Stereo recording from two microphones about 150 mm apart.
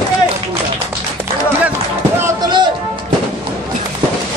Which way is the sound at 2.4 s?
30° right (ahead or behind).